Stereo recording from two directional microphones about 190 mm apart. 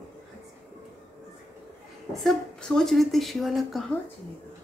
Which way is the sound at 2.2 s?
5° left (ahead or behind).